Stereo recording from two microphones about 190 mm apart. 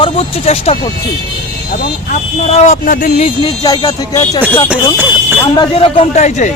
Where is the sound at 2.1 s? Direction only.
40° left (ahead or behind).